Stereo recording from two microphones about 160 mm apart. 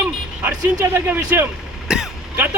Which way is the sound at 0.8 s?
15° right (ahead or behind).